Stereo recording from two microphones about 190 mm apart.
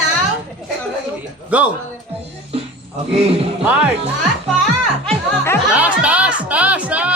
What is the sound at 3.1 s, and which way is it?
Speech, 30° right (ahead or behind).